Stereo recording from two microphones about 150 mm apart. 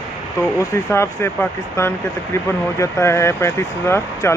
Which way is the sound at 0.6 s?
20° left (ahead or behind).